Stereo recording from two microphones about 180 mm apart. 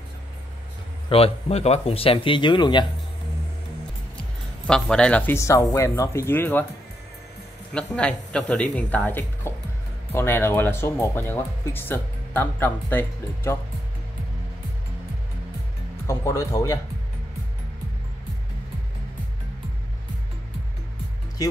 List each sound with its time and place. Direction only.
1.0 s speech: 35° left (ahead or behind)
4.6 s speech: 5° left (ahead or behind)
7.7 s speech: 5° left (ahead or behind)
16.1 s speech: 15° left (ahead or behind)